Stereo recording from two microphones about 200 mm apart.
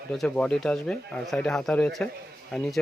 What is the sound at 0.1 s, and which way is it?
Speech, 5° left (ahead or behind).